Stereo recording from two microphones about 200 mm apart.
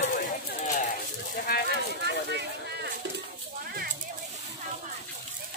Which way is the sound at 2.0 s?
60° right (ahead or behind).